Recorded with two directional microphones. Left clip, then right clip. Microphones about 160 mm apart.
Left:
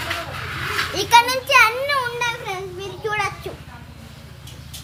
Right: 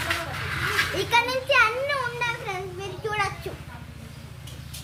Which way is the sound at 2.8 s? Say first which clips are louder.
Left 4 dB; 25° left (ahead or behind).